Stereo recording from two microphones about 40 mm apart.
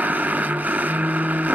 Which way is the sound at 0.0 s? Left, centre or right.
Right.